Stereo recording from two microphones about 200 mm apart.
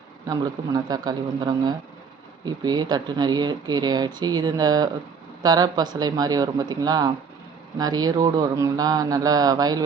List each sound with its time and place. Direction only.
0.3 s speech: 20° right (ahead or behind)